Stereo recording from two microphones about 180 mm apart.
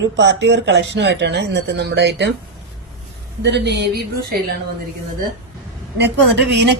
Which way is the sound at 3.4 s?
70° right (ahead or behind).